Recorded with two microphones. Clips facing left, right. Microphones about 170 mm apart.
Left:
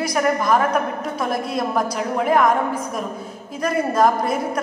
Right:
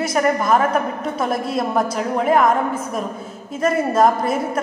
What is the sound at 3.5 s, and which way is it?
A woman's voice, 5° right (ahead or behind).